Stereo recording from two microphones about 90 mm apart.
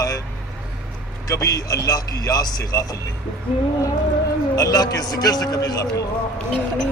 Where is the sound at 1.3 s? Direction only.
40° left (ahead or behind).